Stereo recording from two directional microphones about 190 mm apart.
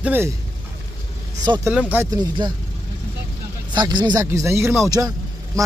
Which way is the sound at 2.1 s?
20° right (ahead or behind).